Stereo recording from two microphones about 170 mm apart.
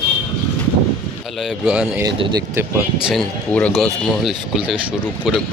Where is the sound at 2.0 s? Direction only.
25° right (ahead or behind).